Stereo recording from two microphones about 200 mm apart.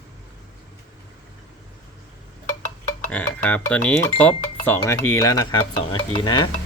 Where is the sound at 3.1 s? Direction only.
5° left (ahead or behind); by 6.5 s 20° left (ahead or behind).